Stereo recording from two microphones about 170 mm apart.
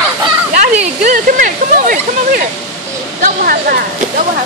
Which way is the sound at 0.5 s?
50° right (ahead or behind).